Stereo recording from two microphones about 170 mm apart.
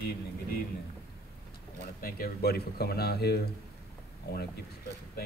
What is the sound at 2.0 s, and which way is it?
Speech, 65° left (ahead or behind).